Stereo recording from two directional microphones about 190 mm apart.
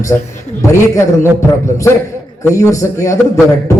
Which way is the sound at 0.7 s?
15° left (ahead or behind).